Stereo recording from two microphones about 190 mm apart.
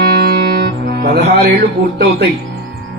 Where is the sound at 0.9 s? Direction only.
60° right (ahead or behind).